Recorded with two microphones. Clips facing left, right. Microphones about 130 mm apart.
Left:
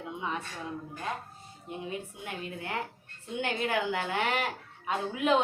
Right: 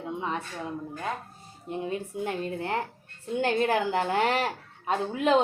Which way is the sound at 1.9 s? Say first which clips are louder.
Right 7 dB; 40° right (ahead or behind).